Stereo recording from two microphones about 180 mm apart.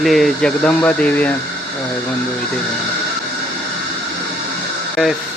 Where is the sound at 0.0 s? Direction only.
Centre (ahead or behind).